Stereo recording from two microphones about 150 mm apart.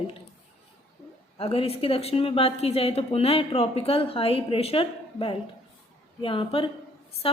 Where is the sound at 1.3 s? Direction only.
40° left (ahead or behind).